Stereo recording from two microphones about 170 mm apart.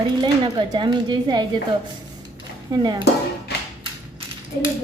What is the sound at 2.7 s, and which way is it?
Speech, 25° right (ahead or behind).